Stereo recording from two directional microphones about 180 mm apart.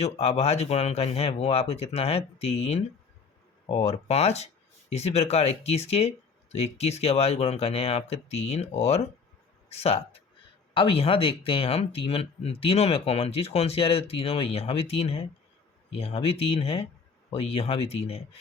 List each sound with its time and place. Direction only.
0.0 s speech: 35° left (ahead or behind)